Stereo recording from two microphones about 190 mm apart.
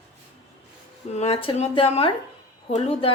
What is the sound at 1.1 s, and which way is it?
Speech, 30° left (ahead or behind).